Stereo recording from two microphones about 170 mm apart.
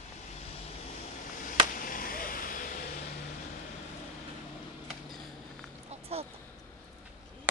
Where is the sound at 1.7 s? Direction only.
55° left (ahead or behind).